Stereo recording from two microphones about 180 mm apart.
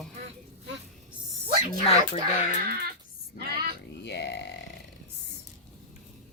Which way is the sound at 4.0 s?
70° left (ahead or behind).